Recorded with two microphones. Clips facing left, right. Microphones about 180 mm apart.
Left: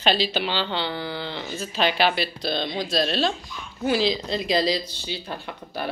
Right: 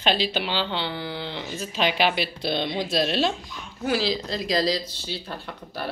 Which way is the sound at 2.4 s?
20° right (ahead or behind).